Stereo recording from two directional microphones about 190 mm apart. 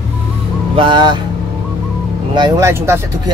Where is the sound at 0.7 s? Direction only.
25° right (ahead or behind).